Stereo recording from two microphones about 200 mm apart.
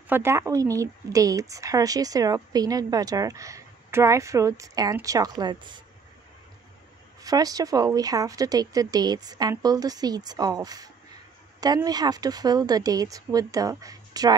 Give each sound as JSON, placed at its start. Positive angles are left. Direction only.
{"t": 0.1, "sound": "speech", "side_deg": -15}
{"t": 7.2, "sound": "speech", "side_deg": -20}